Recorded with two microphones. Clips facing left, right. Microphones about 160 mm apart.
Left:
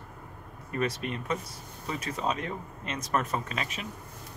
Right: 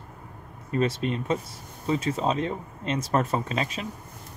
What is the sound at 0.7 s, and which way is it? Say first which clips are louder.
Speech: right 5 dB; 25° right (ahead or behind).